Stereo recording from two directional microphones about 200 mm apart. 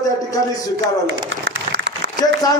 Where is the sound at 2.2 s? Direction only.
20° left (ahead or behind).